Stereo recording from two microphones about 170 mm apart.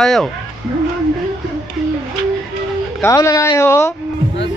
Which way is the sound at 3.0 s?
15° left (ahead or behind).